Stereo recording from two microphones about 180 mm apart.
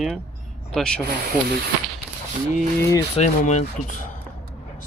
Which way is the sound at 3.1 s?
40° left (ahead or behind).